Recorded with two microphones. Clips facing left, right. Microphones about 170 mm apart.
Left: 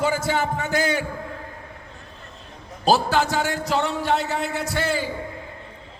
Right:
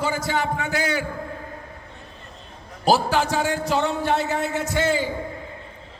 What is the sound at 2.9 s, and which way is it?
Speech, 15° right (ahead or behind).